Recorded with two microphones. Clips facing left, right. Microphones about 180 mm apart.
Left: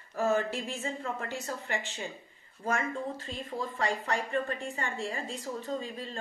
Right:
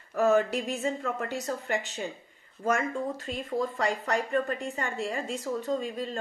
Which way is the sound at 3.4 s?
40° right (ahead or behind).